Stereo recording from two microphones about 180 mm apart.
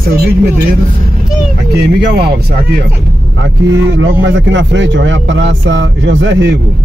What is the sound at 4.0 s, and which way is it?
Speech, 90° right.